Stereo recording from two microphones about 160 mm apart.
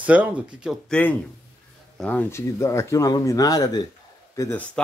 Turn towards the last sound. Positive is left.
turn(degrees=20)  # may be behind; listen again after turning